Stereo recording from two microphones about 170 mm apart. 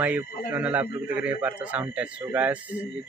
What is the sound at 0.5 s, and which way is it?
Speech, 10° right (ahead or behind).